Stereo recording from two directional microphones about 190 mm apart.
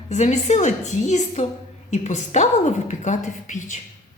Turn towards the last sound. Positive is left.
turn(degrees=40)  # may be behind; listen again after turning